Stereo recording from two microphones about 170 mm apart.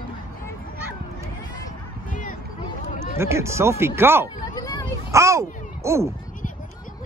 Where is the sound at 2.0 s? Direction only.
50° left (ahead or behind).